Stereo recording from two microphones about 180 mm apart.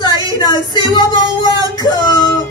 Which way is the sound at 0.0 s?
25° left (ahead or behind).